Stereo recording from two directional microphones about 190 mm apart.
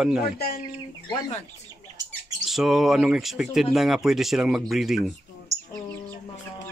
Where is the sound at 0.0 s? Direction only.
5° right (ahead or behind).